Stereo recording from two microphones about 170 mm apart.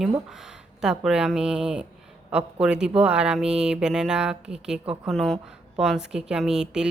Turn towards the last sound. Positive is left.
turn(degrees=-5)  # may be behind; listen again after turning